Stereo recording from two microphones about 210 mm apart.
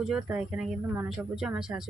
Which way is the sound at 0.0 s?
5° right (ahead or behind).